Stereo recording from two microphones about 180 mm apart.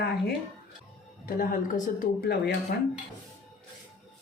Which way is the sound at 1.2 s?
50° left (ahead or behind).